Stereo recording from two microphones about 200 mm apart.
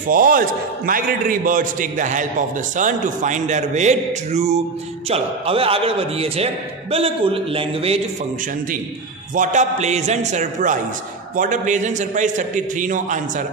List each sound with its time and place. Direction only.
0.1 s a man's voice: 45° right (ahead or behind); by 8.0 s 30° right (ahead or behind)
9.3 s a man's voice: 40° right (ahead or behind)